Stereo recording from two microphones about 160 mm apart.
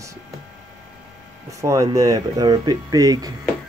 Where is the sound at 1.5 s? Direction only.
20° right (ahead or behind).